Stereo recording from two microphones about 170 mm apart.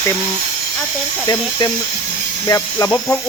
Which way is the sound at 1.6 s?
25° left (ahead or behind).